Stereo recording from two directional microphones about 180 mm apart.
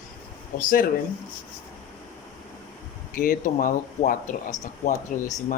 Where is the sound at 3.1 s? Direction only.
50° left (ahead or behind).